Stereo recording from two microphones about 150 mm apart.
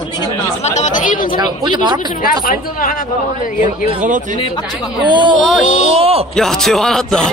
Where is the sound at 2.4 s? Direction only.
65° left (ahead or behind).